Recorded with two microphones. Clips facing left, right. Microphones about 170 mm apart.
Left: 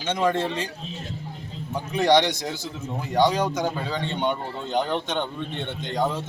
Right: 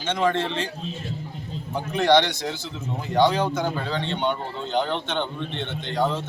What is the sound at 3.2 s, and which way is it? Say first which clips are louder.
Speech: right 1 dB; 15° left (ahead or behind).